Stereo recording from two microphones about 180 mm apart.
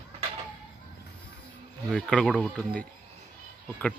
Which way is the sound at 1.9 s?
5° left (ahead or behind).